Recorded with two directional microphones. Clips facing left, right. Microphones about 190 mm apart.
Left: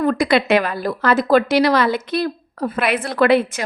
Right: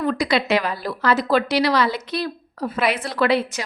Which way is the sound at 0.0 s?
50° left (ahead or behind).